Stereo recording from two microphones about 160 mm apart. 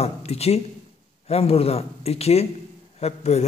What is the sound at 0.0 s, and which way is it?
A man's voice, 40° left (ahead or behind).